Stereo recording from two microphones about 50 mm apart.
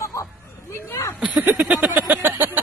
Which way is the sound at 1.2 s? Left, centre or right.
Centre.